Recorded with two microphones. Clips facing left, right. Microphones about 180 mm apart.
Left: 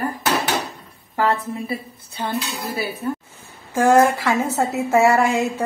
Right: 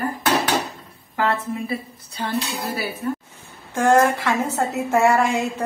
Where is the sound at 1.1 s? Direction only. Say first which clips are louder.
Left 2 dB; 40° left (ahead or behind).